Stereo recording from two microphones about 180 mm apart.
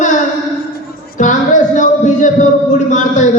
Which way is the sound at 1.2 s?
45° left (ahead or behind).